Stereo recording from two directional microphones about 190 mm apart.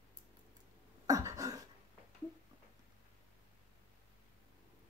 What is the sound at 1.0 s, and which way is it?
Cough, 15° right (ahead or behind).